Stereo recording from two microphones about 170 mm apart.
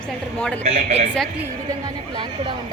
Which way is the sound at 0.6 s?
35° right (ahead or behind).